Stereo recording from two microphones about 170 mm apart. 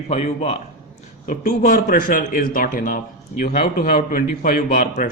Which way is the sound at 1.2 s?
55° left (ahead or behind).